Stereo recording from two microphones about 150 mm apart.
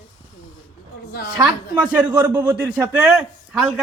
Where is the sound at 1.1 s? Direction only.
90° left.